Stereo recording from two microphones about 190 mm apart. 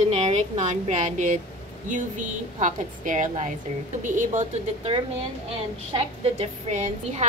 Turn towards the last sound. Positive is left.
turn(degrees=-35)  # may be behind; listen again after turning